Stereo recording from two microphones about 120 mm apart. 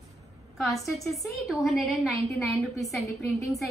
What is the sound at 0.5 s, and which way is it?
A woman's voice, centre (ahead or behind).